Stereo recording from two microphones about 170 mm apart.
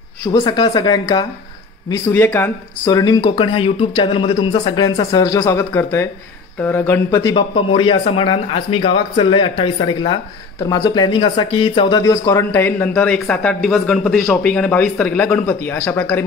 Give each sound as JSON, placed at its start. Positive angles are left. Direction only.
{"t": 0.3, "sound": "speech", "side_deg": 25}
{"t": 2.0, "sound": "speech", "side_deg": 10}
{"t": 2.9, "sound": "a man's voice", "side_deg": 25}
{"t": 12.0, "sound": "speech", "side_deg": 15}